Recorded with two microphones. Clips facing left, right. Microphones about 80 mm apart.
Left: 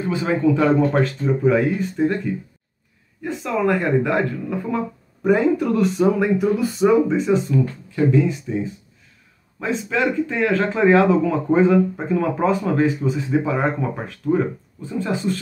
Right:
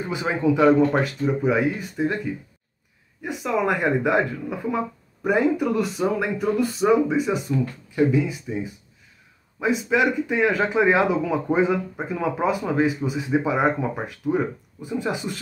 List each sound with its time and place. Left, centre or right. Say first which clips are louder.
0.0 s speech: left 4 dB; centre
3.2 s speech: left 1 dB; centre
9.6 s speech: right 1 dB; centre